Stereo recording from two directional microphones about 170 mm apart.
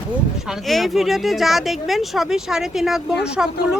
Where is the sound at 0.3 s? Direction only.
Centre (ahead or behind).